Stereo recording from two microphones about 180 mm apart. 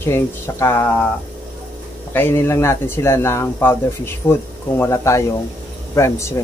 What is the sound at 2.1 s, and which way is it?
Speech, 15° left (ahead or behind).